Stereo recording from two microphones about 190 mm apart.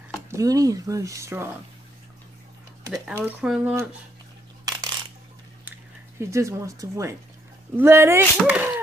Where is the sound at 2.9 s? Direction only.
10° right (ahead or behind).